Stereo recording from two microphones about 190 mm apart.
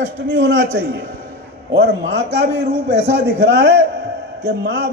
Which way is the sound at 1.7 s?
65° right (ahead or behind).